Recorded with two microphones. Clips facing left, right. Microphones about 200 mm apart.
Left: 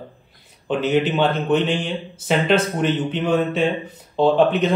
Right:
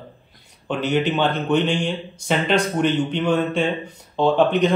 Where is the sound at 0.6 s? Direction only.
5° left (ahead or behind).